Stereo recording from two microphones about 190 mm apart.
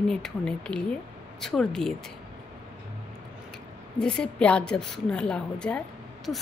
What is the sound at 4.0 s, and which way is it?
A woman's voice, 5° left (ahead or behind).